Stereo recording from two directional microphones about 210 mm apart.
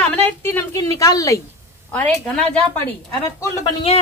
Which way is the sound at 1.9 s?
5° left (ahead or behind).